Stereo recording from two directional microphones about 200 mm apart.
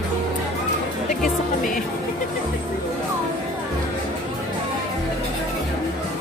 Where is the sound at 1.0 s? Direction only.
45° left (ahead or behind).